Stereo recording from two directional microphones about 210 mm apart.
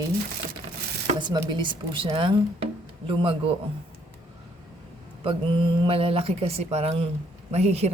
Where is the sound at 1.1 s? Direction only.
20° right (ahead or behind).